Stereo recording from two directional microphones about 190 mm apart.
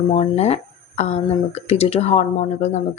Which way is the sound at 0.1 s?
35° left (ahead or behind).